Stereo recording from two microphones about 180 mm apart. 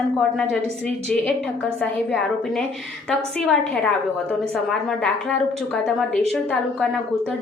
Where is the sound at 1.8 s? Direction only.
5° left (ahead or behind).